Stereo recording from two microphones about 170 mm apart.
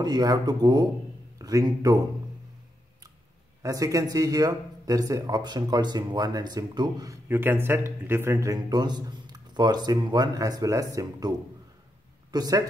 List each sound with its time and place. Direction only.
0.0 s a man's voice: 25° right (ahead or behind)
3.6 s a man's voice: 20° right (ahead or behind)